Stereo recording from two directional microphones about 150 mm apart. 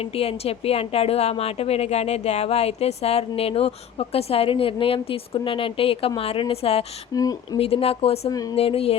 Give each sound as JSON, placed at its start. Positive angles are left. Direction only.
{"t": 0.2, "sound": "a woman's voice", "side_deg": 40}
{"t": 7.1, "sound": "speech", "side_deg": 25}
{"t": 7.6, "sound": "a woman's voice", "side_deg": 40}